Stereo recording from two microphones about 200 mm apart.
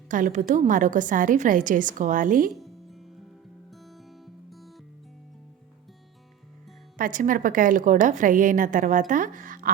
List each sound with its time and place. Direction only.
0.1 s a woman's voice: 40° right (ahead or behind)
2.6 s music: centre (ahead or behind)
4.4 s music: centre (ahead or behind)
6.9 s a woman's voice: 40° right (ahead or behind)